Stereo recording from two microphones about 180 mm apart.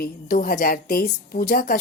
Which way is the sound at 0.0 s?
55° left (ahead or behind).